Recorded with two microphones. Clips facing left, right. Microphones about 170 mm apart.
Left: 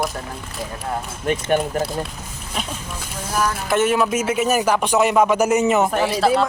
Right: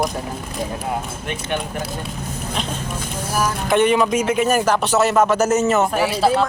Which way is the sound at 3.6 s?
5° left (ahead or behind).